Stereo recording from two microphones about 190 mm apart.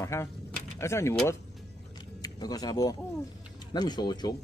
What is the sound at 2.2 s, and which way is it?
Speech, 20° left (ahead or behind).